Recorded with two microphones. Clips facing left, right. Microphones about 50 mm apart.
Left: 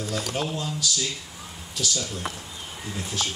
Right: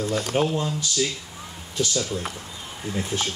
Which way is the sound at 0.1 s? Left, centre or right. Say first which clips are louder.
Right 5 dB; right.